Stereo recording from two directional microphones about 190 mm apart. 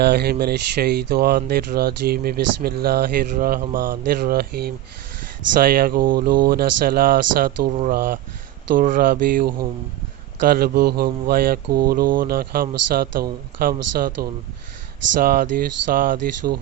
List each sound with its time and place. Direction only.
0.0 s speech: 60° right (ahead or behind)
7.7 s speech: 35° right (ahead or behind)
7.9 s speech: 55° right (ahead or behind)